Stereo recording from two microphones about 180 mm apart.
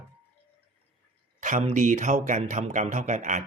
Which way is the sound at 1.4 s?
40° right (ahead or behind).